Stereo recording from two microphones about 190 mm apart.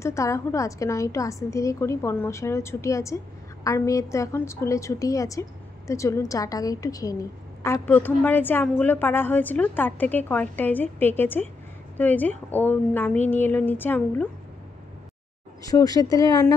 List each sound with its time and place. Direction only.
0.0 s a woman's voice: 15° left (ahead or behind)
15.6 s speech: 20° left (ahead or behind)